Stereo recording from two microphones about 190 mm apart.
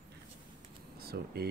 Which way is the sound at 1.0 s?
55° right (ahead or behind).